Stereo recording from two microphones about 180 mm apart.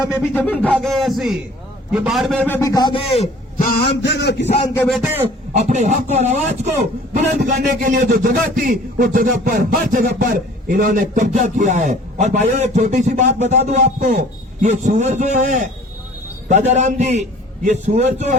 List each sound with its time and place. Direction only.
0.1 s speech: 10° left (ahead or behind)
2.6 s a man's voice: 20° left (ahead or behind)
3.6 s a sound: 60° left (ahead or behind)
5.5 s speech: 40° right (ahead or behind)
7.5 s speech: 50° right (ahead or behind)